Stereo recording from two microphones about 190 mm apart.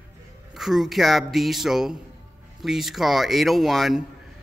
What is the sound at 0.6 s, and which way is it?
A man's voice, centre (ahead or behind).